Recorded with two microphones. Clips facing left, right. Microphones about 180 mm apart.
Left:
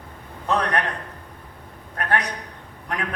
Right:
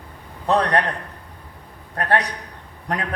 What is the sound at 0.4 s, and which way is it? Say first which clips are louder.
Speech: right 4 dB; 35° right (ahead or behind).